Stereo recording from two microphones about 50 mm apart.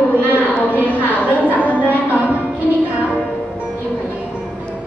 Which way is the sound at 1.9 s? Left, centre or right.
Right.